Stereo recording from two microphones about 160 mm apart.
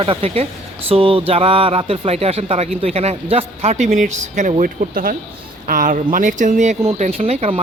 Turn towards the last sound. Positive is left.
turn(degrees=-40)  # may be behind; listen again after turning